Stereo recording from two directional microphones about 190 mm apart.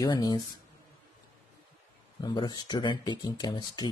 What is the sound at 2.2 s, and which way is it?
Speech, 25° left (ahead or behind).